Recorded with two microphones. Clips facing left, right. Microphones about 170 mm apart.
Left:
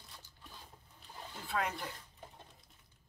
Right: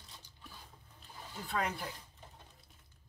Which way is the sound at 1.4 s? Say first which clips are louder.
Even; centre (ahead or behind).